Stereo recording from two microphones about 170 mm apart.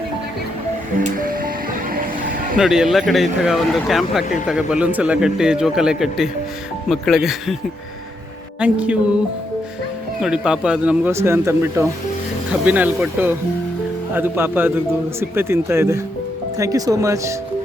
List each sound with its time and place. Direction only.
1.0 s music: 55° right (ahead or behind)
1.9 s vehicle: 55° right (ahead or behind)
2.6 s a man's voice: 5° right (ahead or behind)
8.6 s speech: 5° right (ahead or behind)
10.2 s speech: 5° right (ahead or behind)